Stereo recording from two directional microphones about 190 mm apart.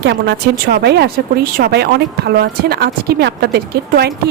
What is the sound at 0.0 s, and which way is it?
A woman's voice, 65° right (ahead or behind).